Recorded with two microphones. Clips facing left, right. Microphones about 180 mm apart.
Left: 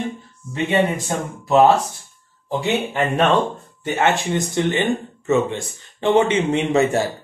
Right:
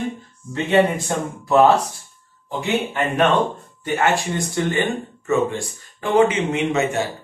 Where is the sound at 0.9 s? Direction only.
15° left (ahead or behind).